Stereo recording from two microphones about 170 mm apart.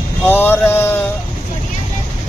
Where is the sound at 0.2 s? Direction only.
10° left (ahead or behind).